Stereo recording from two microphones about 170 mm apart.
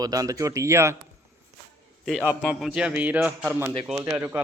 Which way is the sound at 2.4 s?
5° right (ahead or behind).